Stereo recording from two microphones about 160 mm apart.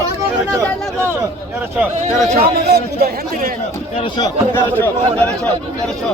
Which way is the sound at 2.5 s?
80° right.